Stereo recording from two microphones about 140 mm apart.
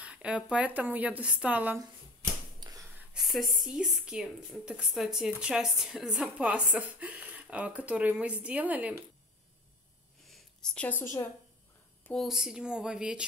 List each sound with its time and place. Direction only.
0.0 s a woman's voice: 10° right (ahead or behind)
2.6 s gasp: 25° right (ahead or behind)
3.1 s a woman's voice: centre (ahead or behind)
10.2 s a sound: 5° left (ahead or behind)
12.0 s speech: 5° left (ahead or behind)